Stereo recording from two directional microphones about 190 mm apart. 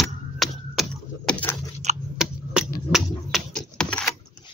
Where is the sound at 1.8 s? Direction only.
35° right (ahead or behind).